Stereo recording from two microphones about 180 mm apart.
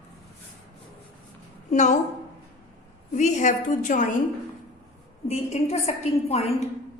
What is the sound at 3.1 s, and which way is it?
Speech, 40° left (ahead or behind).